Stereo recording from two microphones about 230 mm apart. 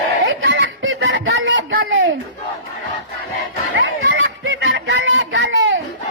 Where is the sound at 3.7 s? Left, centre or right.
Right.